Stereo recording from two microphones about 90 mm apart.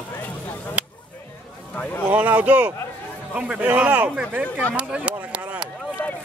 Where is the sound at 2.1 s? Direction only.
15° right (ahead or behind).